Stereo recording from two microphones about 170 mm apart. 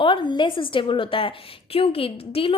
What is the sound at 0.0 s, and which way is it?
A woman's voice, 30° left (ahead or behind).